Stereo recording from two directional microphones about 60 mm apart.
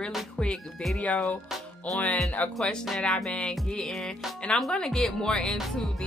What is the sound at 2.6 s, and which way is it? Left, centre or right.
Speech, centre.